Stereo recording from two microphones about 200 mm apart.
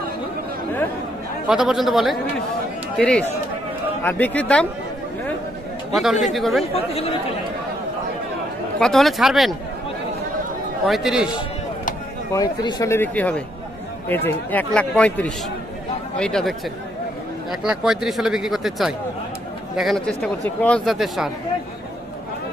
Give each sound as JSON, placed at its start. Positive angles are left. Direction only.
{"t": 1.5, "sound": "speech", "side_deg": -5}
{"t": 6.2, "sound": "speech", "side_deg": 0}
{"t": 6.6, "sound": "speech", "side_deg": 30}
{"t": 8.7, "sound": "speech", "side_deg": 0}
{"t": 10.9, "sound": "speech", "side_deg": 0}
{"t": 12.3, "sound": "speech", "side_deg": 20}